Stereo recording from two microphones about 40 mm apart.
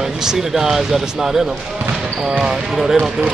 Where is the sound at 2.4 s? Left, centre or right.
Centre.